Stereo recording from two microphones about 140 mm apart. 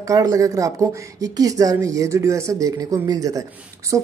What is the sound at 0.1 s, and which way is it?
Speech, 25° right (ahead or behind).